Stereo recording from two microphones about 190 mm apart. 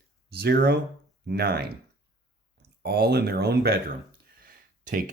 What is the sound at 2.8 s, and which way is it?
Speech, 55° right (ahead or behind).